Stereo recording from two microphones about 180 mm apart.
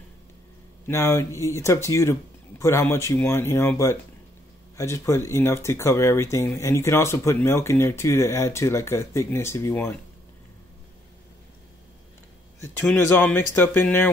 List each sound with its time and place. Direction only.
0.8 s speech: 15° left (ahead or behind)
12.8 s speech: 10° left (ahead or behind)